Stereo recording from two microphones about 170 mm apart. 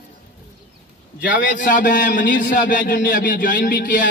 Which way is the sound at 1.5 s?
50° left (ahead or behind).